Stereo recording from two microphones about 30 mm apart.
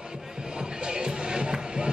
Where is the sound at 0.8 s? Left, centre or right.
Right.